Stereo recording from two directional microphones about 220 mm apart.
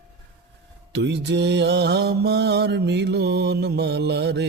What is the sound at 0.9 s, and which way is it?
Mantra, 50° right (ahead or behind).